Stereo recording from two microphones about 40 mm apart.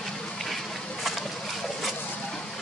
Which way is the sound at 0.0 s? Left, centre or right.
Centre.